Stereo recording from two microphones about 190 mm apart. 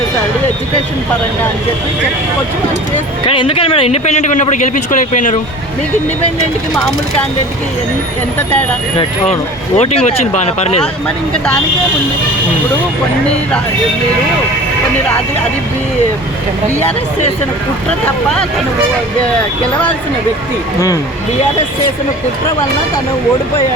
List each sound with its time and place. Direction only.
3.2 s speech: 30° left (ahead or behind)
6.4 s speech: 5° left (ahead or behind)
9.7 s speech: 35° left (ahead or behind)